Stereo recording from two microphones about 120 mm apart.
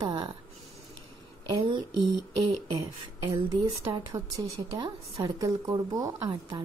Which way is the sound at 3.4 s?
35° right (ahead or behind).